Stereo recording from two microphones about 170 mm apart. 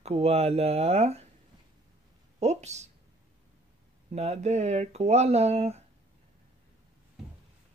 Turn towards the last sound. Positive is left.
turn(degrees=-40)  # may be behind; listen again after turning